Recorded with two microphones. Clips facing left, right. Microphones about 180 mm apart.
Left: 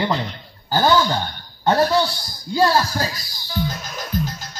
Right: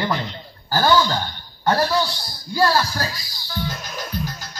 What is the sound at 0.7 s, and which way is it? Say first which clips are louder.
A man's voice: left 1 dB; 20° left (ahead or behind).